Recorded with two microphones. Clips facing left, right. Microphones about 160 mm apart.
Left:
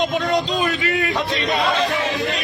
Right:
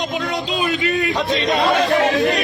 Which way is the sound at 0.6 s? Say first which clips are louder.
Right 2 dB; 20° right (ahead or behind).